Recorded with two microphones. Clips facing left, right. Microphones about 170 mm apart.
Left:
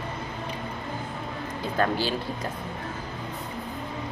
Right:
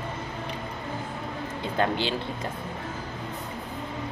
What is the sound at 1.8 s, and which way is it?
Speech, 25° right (ahead or behind).